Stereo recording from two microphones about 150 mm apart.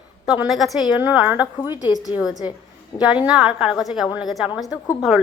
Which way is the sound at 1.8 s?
30° left (ahead or behind).